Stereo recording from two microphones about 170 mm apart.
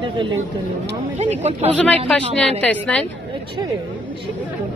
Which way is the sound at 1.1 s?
40° right (ahead or behind).